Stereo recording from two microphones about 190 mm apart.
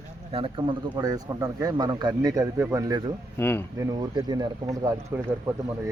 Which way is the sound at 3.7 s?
20° right (ahead or behind).